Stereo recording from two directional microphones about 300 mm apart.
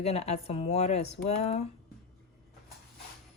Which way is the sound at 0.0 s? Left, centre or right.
Left.